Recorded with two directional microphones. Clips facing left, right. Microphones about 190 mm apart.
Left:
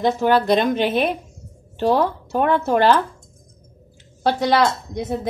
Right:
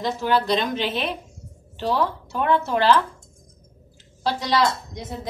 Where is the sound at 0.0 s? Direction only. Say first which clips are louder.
Left 5 dB; 55° left (ahead or behind).